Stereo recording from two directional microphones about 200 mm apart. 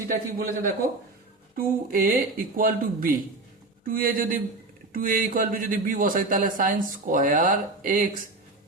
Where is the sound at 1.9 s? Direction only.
45° right (ahead or behind).